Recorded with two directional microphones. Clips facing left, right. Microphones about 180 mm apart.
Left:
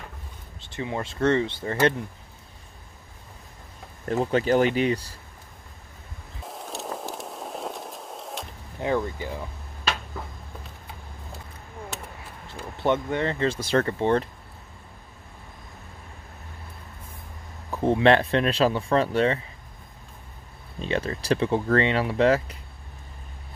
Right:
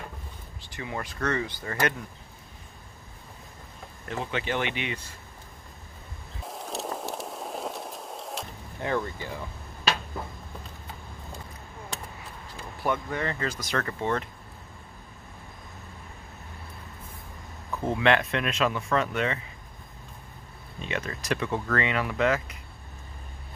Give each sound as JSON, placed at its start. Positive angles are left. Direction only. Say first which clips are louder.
{"t": 0.6, "sound": "speech", "louder": "left 5 dB", "side_deg": 25}
{"t": 4.0, "sound": "speech", "louder": "left 9 dB", "side_deg": 40}
{"t": 6.4, "sound": "a sound", "louder": "right 1 dB", "side_deg": 0}
{"t": 8.8, "sound": "speech", "louder": "left 4 dB", "side_deg": 15}
{"t": 12.4, "sound": "speech", "louder": "left 5 dB", "side_deg": 25}
{"t": 17.6, "sound": "speech", "louder": "left 5 dB", "side_deg": 30}
{"t": 20.8, "sound": "speech", "louder": "left 6 dB", "side_deg": 30}